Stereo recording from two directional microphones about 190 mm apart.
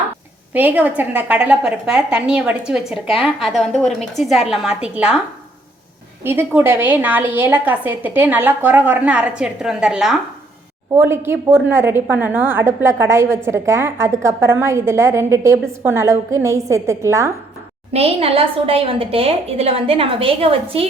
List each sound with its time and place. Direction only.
0.5 s a woman's voice: 10° right (ahead or behind)
6.2 s a woman's voice: 10° right (ahead or behind)
17.9 s a woman's voice: 30° right (ahead or behind)